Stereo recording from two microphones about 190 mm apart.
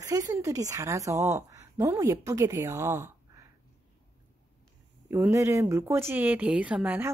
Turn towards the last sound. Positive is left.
turn(degrees=-10)  # may be behind; listen again after turning